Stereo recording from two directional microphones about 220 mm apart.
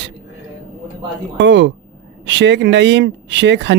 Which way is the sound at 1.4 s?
55° right (ahead or behind).